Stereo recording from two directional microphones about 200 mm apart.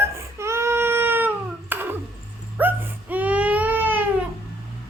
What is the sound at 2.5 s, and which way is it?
Baby cry, 10° right (ahead or behind).